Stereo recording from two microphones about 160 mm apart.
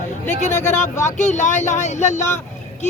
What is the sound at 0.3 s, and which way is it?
Speech, 50° left (ahead or behind).